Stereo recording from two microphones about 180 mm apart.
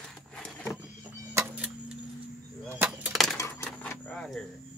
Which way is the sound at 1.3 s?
5° right (ahead or behind).